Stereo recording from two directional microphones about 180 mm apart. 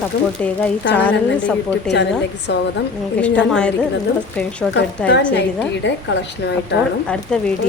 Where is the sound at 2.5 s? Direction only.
70° left (ahead or behind).